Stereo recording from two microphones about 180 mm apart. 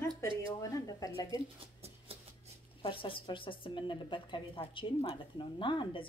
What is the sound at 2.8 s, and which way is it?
A woman's voice, 30° left (ahead or behind).